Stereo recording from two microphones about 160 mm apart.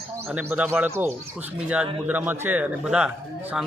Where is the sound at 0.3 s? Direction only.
10° right (ahead or behind).